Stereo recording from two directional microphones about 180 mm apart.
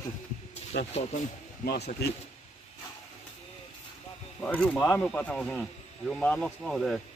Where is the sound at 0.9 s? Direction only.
40° left (ahead or behind).